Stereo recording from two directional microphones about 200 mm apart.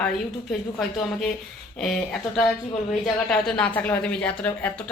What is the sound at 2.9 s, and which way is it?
A woman's voice, 5° left (ahead or behind).